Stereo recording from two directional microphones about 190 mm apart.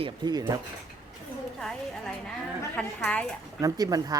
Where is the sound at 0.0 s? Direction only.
20° right (ahead or behind).